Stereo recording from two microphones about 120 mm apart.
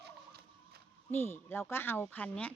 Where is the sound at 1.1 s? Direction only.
20° left (ahead or behind).